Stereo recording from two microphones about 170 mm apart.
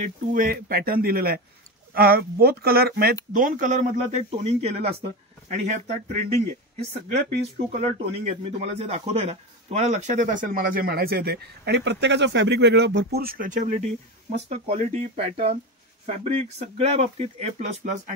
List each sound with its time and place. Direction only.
0.0 s speech: 55° right (ahead or behind)
3.3 s speech: 50° right (ahead or behind)